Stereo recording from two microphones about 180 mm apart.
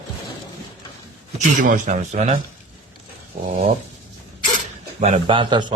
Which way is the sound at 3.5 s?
35° right (ahead or behind).